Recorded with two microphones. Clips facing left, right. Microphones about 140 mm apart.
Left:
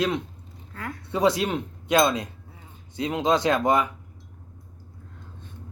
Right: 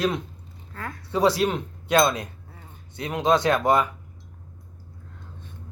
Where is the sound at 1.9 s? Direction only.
20° left (ahead or behind).